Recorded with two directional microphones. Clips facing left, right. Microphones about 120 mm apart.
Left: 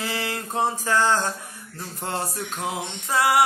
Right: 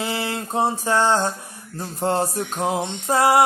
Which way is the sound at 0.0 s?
25° right (ahead or behind).